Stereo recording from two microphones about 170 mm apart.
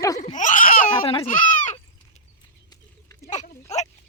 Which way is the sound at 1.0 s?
35° left (ahead or behind).